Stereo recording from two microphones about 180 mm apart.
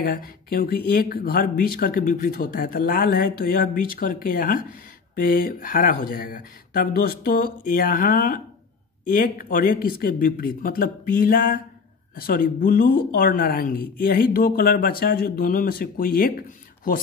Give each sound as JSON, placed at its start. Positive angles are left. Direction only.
{"t": 0.0, "sound": "speech", "side_deg": 55}